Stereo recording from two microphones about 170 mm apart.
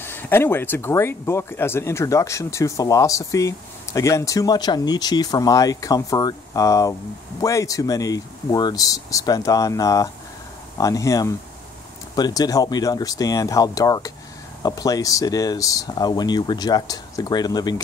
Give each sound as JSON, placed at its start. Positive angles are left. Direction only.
{"t": 0.0, "sound": "speech", "side_deg": 10}